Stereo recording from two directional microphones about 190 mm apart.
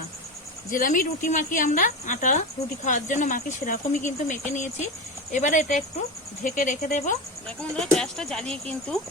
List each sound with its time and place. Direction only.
0.7 s speech: 45° left (ahead or behind)
7.4 s speech: 5° left (ahead or behind)